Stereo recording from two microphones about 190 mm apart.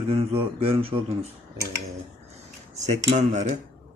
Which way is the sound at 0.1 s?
30° right (ahead or behind).